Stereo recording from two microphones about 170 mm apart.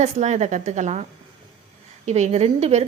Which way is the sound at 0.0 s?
45° right (ahead or behind).